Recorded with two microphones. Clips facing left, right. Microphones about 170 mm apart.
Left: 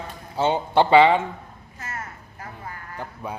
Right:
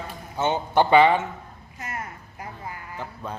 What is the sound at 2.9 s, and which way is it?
Speech, 10° left (ahead or behind).